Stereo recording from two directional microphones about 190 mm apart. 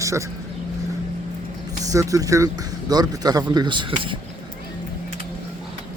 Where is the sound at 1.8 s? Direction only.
15° right (ahead or behind).